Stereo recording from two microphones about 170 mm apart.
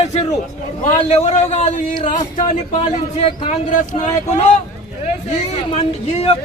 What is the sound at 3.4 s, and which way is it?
Speech, 45° left (ahead or behind).